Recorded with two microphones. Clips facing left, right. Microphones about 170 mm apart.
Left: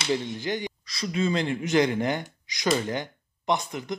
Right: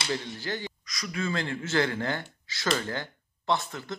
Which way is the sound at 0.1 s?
20° left (ahead or behind).